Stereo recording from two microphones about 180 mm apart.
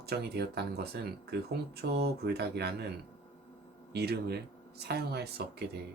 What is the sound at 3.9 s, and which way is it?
Speech, 65° right (ahead or behind).